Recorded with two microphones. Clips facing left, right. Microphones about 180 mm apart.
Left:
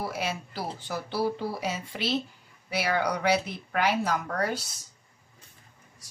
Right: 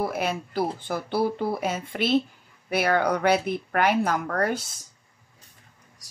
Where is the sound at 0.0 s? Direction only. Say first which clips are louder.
Right 5 dB; 55° right (ahead or behind).